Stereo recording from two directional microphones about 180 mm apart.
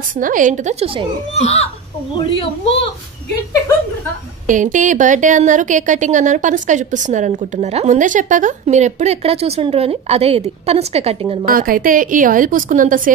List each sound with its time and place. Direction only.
0.2 s a woman's voice: 45° right (ahead or behind)
1.3 s a child's voice: 35° left (ahead or behind)
4.5 s speech: 45° right (ahead or behind)
11.4 s speech: 50° right (ahead or behind)